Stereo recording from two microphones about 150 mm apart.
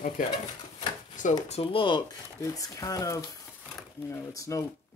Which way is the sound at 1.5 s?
40° left (ahead or behind).